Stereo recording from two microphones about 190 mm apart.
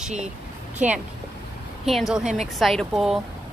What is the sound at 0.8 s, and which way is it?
Speech, 40° right (ahead or behind).